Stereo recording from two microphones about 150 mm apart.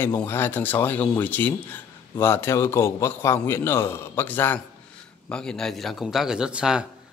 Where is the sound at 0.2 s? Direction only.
15° left (ahead or behind).